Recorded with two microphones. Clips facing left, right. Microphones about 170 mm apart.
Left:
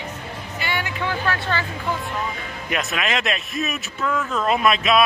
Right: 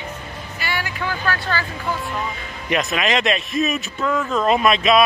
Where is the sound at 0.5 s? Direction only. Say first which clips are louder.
Even; 20° left (ahead or behind).